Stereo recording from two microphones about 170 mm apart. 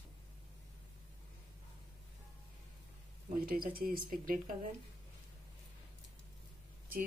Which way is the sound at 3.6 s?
60° right (ahead or behind).